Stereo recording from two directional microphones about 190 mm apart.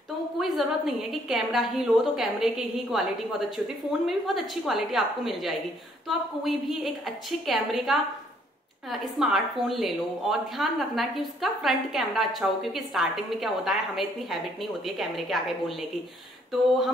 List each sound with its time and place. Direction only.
0.4 s a woman's voice: centre (ahead or behind)
9.2 s a woman's voice: centre (ahead or behind)